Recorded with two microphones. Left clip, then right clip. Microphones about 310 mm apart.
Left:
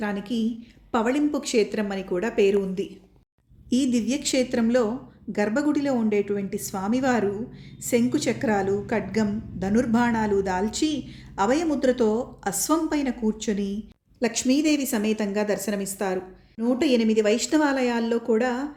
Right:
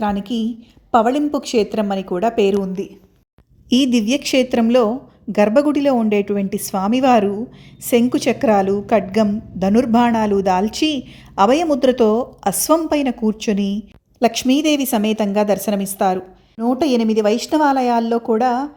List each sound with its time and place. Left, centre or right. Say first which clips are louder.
0.0 s a woman's voice: right 7 dB; right